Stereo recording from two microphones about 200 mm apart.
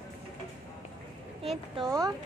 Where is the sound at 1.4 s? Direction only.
25° right (ahead or behind).